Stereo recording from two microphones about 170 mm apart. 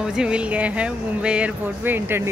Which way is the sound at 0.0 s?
5° right (ahead or behind).